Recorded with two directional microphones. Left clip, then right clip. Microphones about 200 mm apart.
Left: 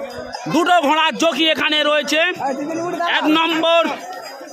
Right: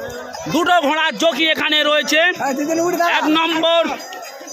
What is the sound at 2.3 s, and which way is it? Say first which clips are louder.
Speech: right 3 dB; 40° right (ahead or behind).